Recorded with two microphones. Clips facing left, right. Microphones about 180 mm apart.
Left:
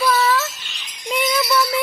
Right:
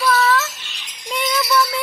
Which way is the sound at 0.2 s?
10° left (ahead or behind).